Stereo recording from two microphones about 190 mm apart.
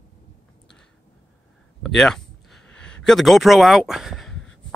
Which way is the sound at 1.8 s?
Centre (ahead or behind).